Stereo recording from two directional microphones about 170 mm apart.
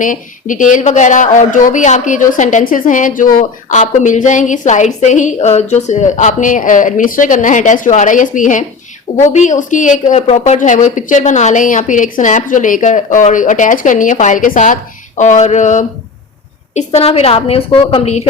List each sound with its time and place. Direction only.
0.0 s a woman's voice: 50° left (ahead or behind); by 18.2 s 35° left (ahead or behind)